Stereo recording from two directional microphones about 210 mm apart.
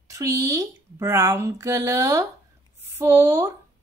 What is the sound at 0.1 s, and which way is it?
A woman's voice, 15° right (ahead or behind).